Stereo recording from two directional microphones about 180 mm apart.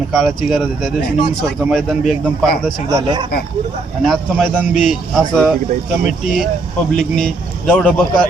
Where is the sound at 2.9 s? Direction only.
25° right (ahead or behind).